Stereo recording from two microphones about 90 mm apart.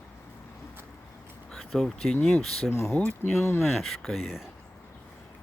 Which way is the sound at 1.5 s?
5° left (ahead or behind).